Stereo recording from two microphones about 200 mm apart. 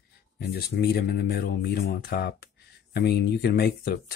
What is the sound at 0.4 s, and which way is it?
Speech, 55° left (ahead or behind).